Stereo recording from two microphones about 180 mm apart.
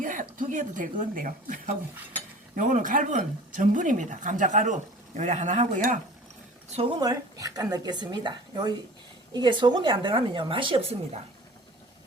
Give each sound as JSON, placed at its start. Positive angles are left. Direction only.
{"t": 0.0, "sound": "speech", "side_deg": -45}
{"t": 7.0, "sound": "speech", "side_deg": -20}